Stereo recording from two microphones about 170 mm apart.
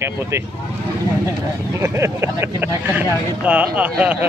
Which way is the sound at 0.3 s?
15° right (ahead or behind).